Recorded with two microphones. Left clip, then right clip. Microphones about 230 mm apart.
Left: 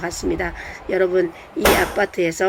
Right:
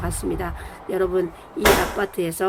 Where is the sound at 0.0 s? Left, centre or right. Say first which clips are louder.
Left 4 dB; centre.